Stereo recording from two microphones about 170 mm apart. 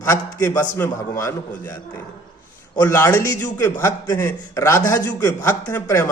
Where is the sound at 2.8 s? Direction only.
15° left (ahead or behind).